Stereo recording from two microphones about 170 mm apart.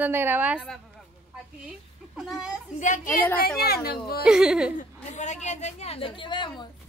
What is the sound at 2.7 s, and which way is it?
Speech, 50° left (ahead or behind).